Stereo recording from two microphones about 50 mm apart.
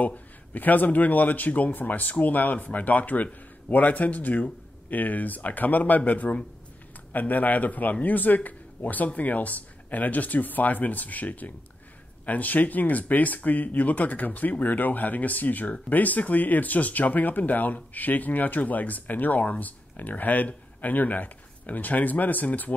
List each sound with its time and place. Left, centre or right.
0.0 s speech: left